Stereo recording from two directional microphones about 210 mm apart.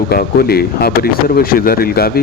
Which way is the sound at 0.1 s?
45° left (ahead or behind).